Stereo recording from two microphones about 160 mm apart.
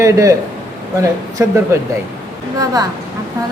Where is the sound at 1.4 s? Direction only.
15° right (ahead or behind).